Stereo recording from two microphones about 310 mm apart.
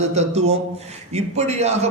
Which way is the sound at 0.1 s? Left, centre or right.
Right.